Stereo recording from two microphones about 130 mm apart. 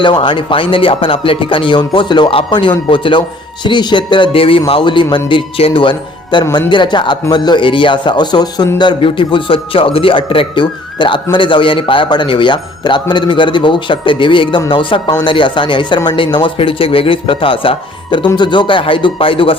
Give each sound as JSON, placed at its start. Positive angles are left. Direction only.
{"t": 0.0, "sound": "a man's voice", "side_deg": 40}